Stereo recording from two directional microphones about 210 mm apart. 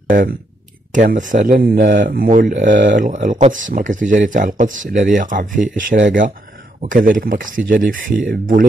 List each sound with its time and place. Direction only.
0.1 s speech: 40° right (ahead or behind)